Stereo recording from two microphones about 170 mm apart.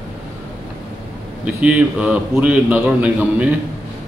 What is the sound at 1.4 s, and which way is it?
A man's voice, 10° right (ahead or behind).